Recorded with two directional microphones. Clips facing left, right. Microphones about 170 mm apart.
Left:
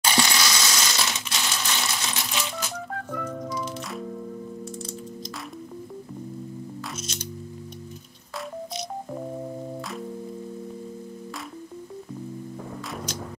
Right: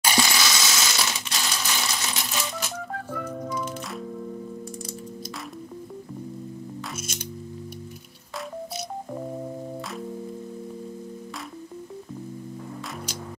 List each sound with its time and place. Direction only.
0.0 s coin: 5° right (ahead or behind)
2.3 s music: 5° right (ahead or behind)